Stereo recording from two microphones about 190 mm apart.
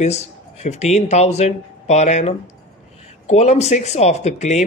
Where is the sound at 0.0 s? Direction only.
35° left (ahead or behind).